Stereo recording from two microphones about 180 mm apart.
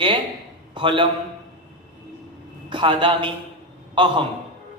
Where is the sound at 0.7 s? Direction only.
25° right (ahead or behind).